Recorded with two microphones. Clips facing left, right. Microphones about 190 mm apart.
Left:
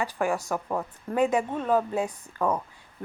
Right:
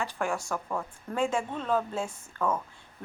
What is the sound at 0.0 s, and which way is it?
A woman's voice, 15° left (ahead or behind).